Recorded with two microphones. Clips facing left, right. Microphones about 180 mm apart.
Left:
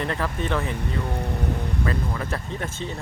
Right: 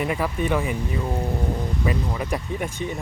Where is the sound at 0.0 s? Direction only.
10° right (ahead or behind).